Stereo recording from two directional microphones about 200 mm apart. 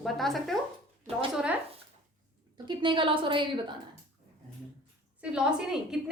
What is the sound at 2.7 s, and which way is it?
Speech, 25° right (ahead or behind).